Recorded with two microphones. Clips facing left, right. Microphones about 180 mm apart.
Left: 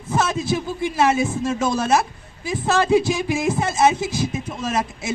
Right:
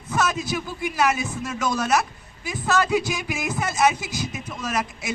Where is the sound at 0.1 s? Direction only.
30° left (ahead or behind).